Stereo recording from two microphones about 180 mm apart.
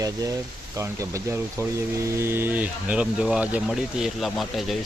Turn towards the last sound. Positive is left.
turn(degrees=0)  # may be behind; listen again after turning